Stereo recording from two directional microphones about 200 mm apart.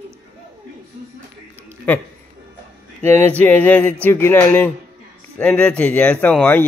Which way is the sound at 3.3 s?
10° left (ahead or behind).